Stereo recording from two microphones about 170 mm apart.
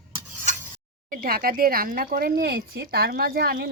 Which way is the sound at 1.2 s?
60° right (ahead or behind).